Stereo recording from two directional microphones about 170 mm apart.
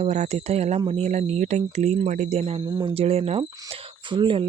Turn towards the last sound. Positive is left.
turn(degrees=-30)  # may be behind; listen again after turning